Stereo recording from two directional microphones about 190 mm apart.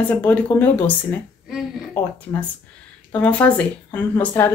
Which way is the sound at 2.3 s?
10° left (ahead or behind).